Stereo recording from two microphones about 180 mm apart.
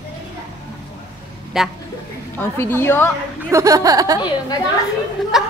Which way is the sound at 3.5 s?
20° right (ahead or behind).